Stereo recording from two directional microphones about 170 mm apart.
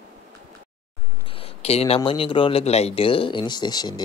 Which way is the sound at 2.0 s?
30° left (ahead or behind).